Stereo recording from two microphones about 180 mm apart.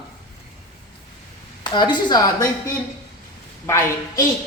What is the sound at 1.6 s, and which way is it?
A woman's voice, 25° left (ahead or behind).